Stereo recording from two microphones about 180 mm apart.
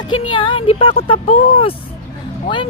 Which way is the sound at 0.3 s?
30° left (ahead or behind).